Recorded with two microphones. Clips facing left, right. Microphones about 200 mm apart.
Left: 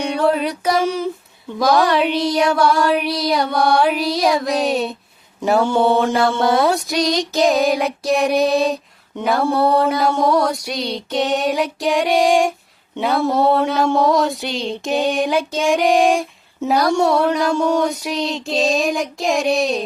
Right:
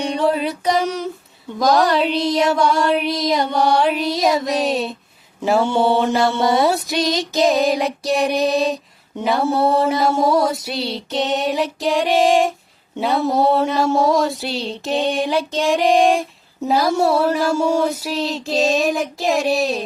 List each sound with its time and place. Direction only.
0.0 s a sound: centre (ahead or behind)
1.6 s female singing: 5° left (ahead or behind)
5.4 s mantra: 5° right (ahead or behind)
6.4 s female singing: centre (ahead or behind)
9.4 s mantra: 25° right (ahead or behind)
10.0 s female singing: 5° right (ahead or behind)